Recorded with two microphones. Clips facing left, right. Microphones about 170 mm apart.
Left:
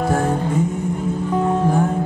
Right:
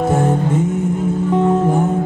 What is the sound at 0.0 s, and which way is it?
Music, 20° right (ahead or behind).